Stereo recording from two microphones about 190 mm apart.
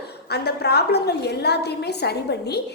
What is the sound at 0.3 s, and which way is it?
A woman's voice, 60° left (ahead or behind).